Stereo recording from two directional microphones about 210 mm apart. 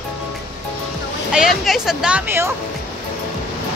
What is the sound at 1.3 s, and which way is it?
Speech, centre (ahead or behind).